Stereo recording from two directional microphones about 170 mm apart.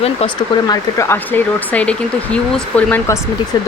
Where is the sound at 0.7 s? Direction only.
15° left (ahead or behind).